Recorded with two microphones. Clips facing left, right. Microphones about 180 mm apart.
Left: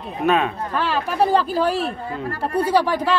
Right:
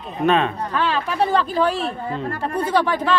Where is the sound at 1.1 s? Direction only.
35° left (ahead or behind).